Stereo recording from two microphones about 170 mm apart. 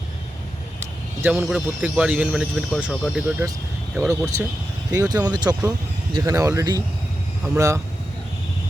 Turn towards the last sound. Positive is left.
turn(degrees=-20)  # may be behind; listen again after turning